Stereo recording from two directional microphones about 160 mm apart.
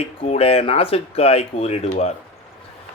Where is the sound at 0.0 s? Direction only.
40° left (ahead or behind).